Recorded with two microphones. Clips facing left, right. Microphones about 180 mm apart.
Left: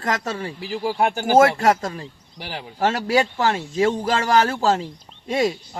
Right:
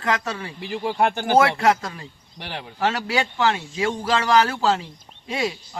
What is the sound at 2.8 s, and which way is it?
Speech, 45° left (ahead or behind).